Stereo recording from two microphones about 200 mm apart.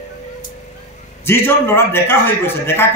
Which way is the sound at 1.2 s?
10° left (ahead or behind).